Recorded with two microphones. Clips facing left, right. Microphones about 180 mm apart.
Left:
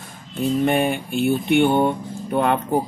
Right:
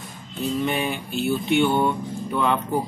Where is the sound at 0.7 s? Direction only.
55° left (ahead or behind).